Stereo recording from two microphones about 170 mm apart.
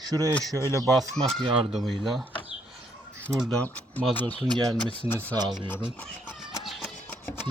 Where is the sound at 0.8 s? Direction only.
Centre (ahead or behind).